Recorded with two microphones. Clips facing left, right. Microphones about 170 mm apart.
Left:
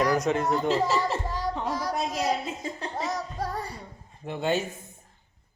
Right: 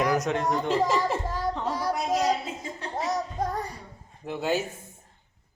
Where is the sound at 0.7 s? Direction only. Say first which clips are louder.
Right 1 dB; 15° right (ahead or behind).